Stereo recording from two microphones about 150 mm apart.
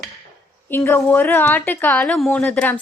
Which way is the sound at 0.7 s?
15° left (ahead or behind).